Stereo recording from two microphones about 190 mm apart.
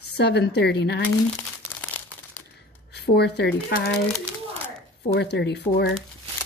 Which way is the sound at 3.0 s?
60° left (ahead or behind).